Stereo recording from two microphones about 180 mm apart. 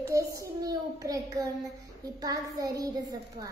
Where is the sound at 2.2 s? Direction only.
20° right (ahead or behind).